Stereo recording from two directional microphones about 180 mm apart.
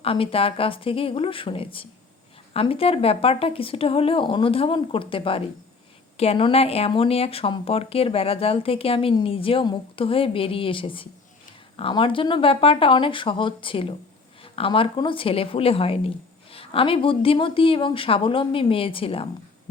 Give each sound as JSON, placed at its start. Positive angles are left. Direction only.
{"t": 0.0, "sound": "a woman's voice", "side_deg": 30}